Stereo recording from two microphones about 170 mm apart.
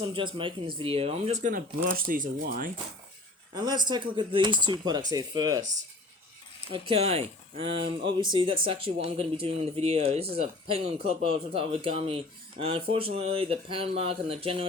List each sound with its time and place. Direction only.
0.0 s speech: 30° right (ahead or behind); by 2.6 s 60° right (ahead or behind)
3.5 s speech: 25° right (ahead or behind)
6.7 s speech: 35° right (ahead or behind)